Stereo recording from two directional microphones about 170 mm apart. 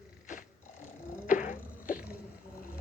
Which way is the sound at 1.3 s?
55° left (ahead or behind).